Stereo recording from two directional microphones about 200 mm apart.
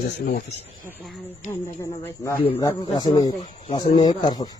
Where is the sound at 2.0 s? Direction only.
10° left (ahead or behind).